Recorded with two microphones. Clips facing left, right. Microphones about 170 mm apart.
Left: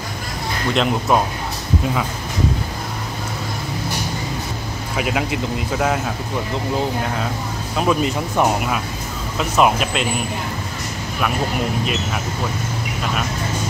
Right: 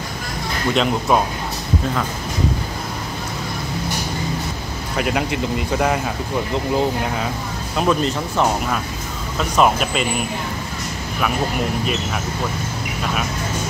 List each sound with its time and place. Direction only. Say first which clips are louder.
0.7 s speech: even; centre (ahead or behind)
4.9 s speech: right 1 dB; centre (ahead or behind)
7.7 s speech: even; 5° left (ahead or behind)
11.8 s speech: even; centre (ahead or behind)